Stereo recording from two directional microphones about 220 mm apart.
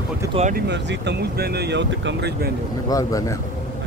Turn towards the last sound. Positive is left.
turn(degrees=15)  # may be behind; listen again after turning